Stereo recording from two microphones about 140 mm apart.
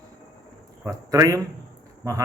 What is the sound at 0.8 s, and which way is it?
Speech, 20° right (ahead or behind).